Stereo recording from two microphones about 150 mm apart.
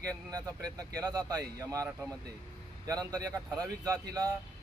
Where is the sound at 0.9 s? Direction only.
25° right (ahead or behind).